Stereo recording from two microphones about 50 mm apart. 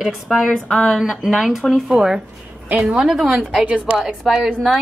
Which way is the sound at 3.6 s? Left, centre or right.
Right.